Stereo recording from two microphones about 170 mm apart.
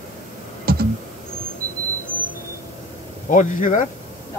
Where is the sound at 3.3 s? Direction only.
50° left (ahead or behind).